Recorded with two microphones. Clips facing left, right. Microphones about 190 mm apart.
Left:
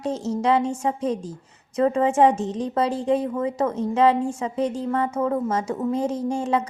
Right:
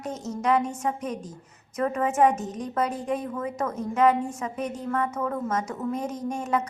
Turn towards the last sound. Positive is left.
turn(degrees=30)  # may be behind; listen again after turning